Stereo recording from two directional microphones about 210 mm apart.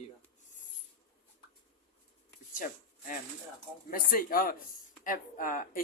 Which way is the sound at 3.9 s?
45° left (ahead or behind).